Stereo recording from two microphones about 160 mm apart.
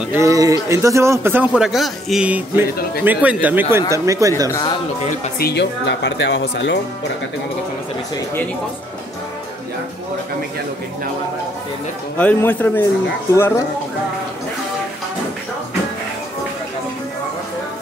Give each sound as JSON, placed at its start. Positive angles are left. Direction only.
{"t": 0.1, "sound": "a man's voice", "side_deg": -20}
{"t": 4.5, "sound": "speech", "side_deg": 20}
{"t": 5.4, "sound": "a woman's voice", "side_deg": 90}
{"t": 12.2, "sound": "speech", "side_deg": 10}